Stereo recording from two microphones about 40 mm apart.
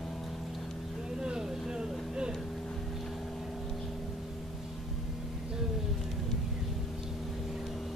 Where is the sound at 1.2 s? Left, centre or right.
Right.